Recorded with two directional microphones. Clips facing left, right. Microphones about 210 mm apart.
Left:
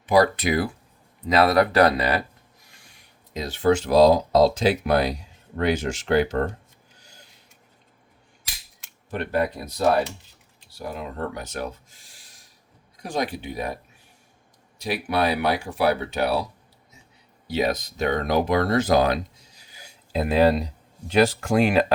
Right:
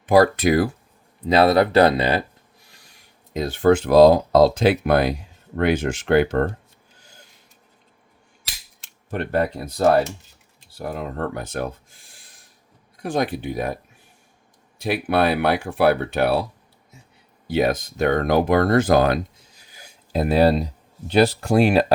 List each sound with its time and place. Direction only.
0.0 s speech: 50° right (ahead or behind)
1.2 s speech: 30° right (ahead or behind)
3.3 s speech: 55° right (ahead or behind)
11.3 s speech: 50° right (ahead or behind)
14.8 s speech: 55° right (ahead or behind)
17.5 s speech: 50° right (ahead or behind); by 21.9 s 35° right (ahead or behind)